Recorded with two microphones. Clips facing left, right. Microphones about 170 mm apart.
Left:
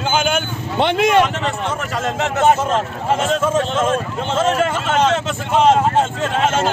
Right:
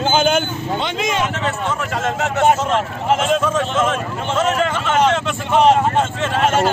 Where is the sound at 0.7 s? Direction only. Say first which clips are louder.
Left 9 dB; 60° left (ahead or behind).